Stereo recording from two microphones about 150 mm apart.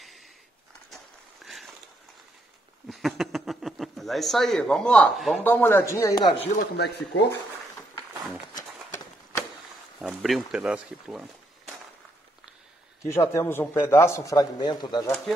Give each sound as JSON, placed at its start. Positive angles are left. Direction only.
{"t": 0.8, "sound": "a sound", "side_deg": 0}
{"t": 2.9, "sound": "speech", "side_deg": 0}
{"t": 5.4, "sound": "a man's voice", "side_deg": 15}
{"t": 6.5, "sound": "speech", "side_deg": 90}
{"t": 8.5, "sound": "horse", "side_deg": 20}
{"t": 9.9, "sound": "speech", "side_deg": 0}
{"t": 13.0, "sound": "a man's voice", "side_deg": 20}